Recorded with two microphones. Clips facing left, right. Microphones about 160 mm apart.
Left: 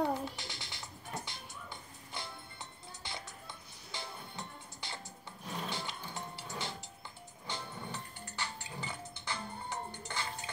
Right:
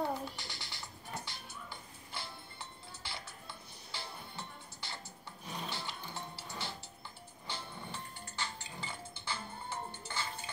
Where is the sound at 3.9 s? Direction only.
20° left (ahead or behind).